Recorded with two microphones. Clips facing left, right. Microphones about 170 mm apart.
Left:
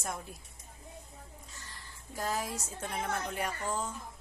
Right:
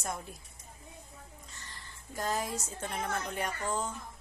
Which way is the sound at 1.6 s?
5° left (ahead or behind).